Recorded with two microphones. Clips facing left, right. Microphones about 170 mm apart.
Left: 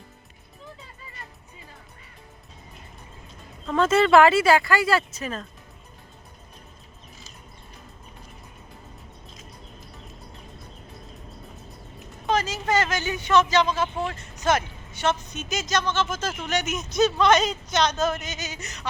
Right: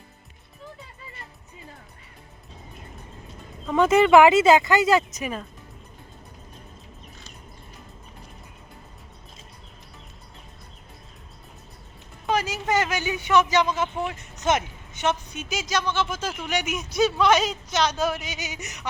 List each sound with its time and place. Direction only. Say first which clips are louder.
3.7 s speech: right 2 dB; 15° right (ahead or behind)
12.3 s speech: even; 15° right (ahead or behind)